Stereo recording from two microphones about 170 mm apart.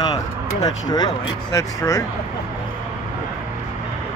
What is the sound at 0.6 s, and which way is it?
Speech, 20° left (ahead or behind).